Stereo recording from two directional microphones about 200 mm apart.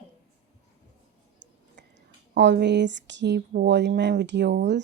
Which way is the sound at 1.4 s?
60° right (ahead or behind).